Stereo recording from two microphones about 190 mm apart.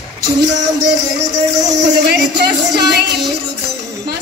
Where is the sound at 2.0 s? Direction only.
60° right (ahead or behind).